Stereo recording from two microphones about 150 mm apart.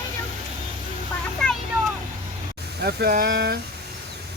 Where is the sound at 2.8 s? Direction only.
90° right.